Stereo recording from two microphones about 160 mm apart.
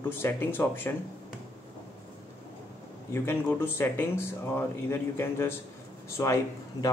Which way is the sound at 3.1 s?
15° left (ahead or behind).